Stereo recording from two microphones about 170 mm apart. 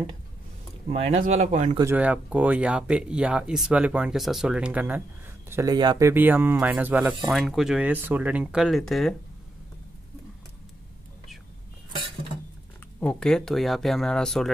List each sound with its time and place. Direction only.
0.9 s speech: 40° right (ahead or behind)
1.8 s speech: 10° right (ahead or behind)
13.0 s speech: 5° left (ahead or behind)